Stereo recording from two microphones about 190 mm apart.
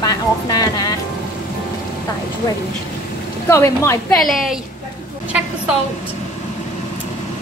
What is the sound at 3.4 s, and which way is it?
Speech, 15° left (ahead or behind).